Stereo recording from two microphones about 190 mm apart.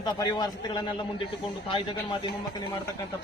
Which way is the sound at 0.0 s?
20° left (ahead or behind).